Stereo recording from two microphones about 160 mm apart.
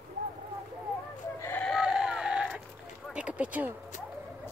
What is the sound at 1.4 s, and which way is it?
Sheep, 15° left (ahead or behind).